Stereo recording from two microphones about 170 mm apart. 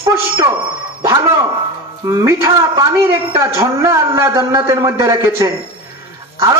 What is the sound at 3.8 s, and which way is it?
A man's voice, 15° right (ahead or behind).